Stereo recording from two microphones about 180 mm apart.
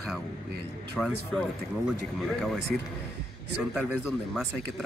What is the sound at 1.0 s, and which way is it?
Speech, 5° left (ahead or behind).